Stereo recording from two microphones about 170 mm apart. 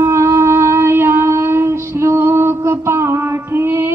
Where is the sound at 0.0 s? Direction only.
15° right (ahead or behind).